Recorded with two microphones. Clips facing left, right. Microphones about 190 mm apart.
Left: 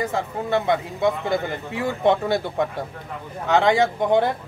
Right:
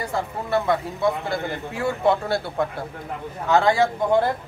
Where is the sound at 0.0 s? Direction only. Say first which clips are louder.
Left 2 dB; 20° left (ahead or behind).